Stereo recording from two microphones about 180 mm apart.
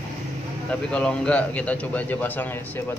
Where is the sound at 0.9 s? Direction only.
5° left (ahead or behind).